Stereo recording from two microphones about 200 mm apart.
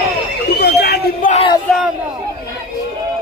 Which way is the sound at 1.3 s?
30° left (ahead or behind).